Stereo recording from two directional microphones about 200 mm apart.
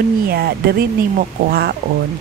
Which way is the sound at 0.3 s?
50° right (ahead or behind).